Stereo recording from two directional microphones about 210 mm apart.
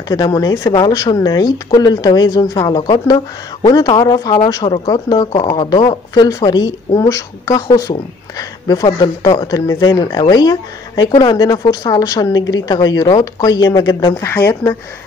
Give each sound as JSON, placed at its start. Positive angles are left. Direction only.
{"t": 0.1, "sound": "speech", "side_deg": 15}